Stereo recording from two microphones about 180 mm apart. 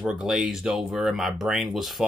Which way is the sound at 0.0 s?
5° right (ahead or behind).